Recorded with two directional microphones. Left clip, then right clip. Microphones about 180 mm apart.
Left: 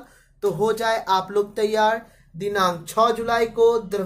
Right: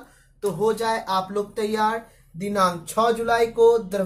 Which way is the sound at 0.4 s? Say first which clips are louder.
Left 1 dB; 50° left (ahead or behind).